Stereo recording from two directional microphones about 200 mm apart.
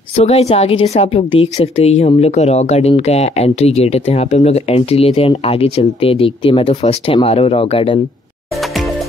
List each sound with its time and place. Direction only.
0.1 s a woman's voice: 30° left (ahead or behind)